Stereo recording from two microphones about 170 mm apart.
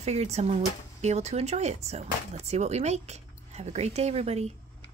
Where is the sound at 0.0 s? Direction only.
40° right (ahead or behind).